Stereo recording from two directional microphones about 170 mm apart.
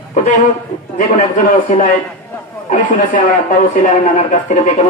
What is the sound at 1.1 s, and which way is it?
A man's voice, 55° left (ahead or behind).